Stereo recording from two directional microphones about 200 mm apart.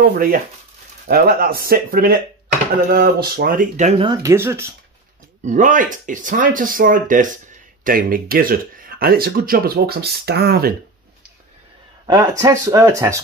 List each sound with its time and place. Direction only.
0.0 s speech: 45° right (ahead or behind)
4.1 s speech: 15° right (ahead or behind)
5.4 s speech: 40° right (ahead or behind)
12.1 s speech: 20° right (ahead or behind)